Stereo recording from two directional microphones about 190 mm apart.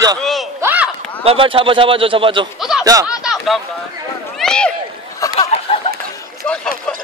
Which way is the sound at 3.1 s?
Centre (ahead or behind).